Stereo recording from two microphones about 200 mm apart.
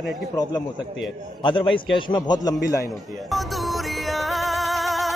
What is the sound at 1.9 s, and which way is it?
Speech, 20° left (ahead or behind).